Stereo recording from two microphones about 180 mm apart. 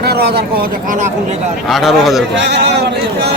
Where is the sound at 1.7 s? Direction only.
Centre (ahead or behind).